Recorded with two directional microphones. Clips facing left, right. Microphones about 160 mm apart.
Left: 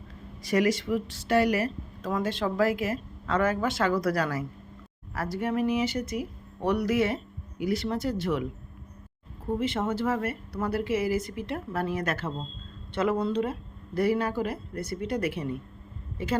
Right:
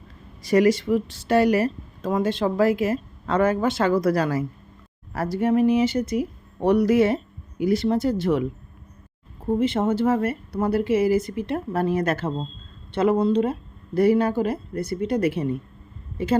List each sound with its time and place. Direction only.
0.4 s speech: 30° right (ahead or behind)
9.5 s speech: 25° right (ahead or behind)